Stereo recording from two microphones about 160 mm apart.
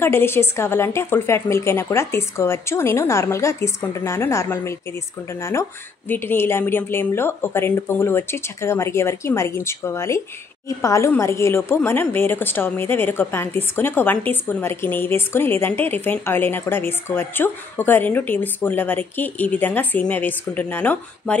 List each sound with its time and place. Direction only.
0.0 s a woman's voice: 15° left (ahead or behind)